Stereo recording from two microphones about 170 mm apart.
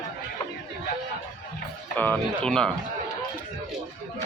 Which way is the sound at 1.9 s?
10° left (ahead or behind).